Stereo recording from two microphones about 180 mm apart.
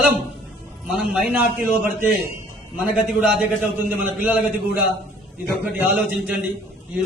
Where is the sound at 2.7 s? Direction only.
5° right (ahead or behind).